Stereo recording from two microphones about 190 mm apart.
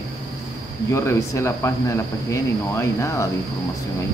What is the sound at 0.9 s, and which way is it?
Speech, 15° left (ahead or behind).